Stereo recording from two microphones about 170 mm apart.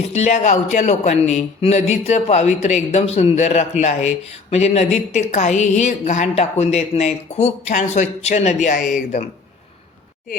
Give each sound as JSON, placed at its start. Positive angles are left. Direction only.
{"t": 0.1, "sound": "a woman's voice", "side_deg": 40}